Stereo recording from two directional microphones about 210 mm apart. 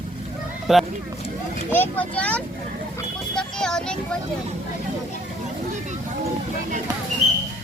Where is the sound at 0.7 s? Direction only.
Centre (ahead or behind).